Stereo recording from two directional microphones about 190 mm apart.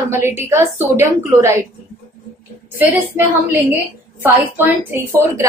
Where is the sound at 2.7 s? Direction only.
10° right (ahead or behind).